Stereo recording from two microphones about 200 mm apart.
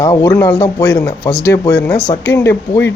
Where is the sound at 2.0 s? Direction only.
30° left (ahead or behind).